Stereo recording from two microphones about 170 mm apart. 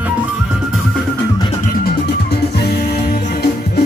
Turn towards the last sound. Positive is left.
turn(degrees=70)  # may be behind; listen again after turning